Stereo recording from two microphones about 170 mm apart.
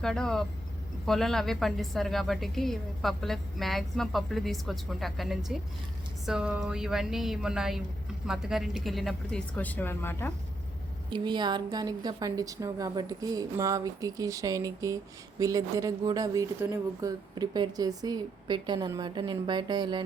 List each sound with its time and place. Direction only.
0.0 s a woman's voice: 5° left (ahead or behind)
11.1 s a woman's voice: 25° right (ahead or behind)